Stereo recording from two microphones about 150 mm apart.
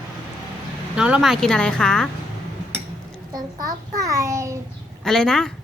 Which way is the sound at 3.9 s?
20° right (ahead or behind).